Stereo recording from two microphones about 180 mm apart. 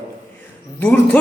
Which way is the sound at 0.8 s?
10° left (ahead or behind).